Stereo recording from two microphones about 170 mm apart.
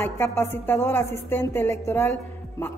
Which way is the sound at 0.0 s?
15° left (ahead or behind).